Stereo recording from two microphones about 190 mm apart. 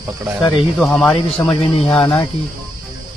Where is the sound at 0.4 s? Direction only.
25° left (ahead or behind).